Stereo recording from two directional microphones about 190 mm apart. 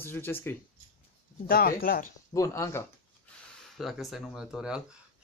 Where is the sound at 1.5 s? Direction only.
50° left (ahead or behind).